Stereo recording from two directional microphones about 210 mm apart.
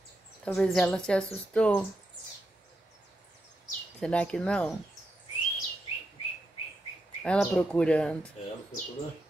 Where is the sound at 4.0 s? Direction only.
5° left (ahead or behind).